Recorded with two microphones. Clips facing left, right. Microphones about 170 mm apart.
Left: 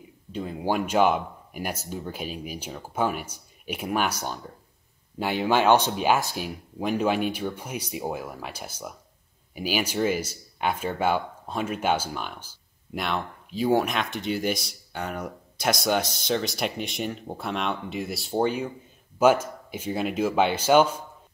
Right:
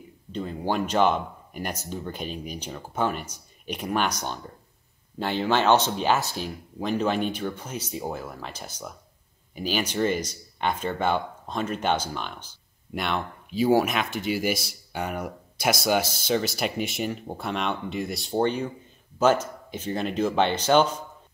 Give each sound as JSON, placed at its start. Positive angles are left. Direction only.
{"t": 0.3, "sound": "speech", "side_deg": 10}